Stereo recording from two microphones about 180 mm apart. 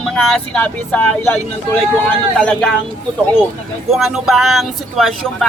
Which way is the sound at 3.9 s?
Centre (ahead or behind).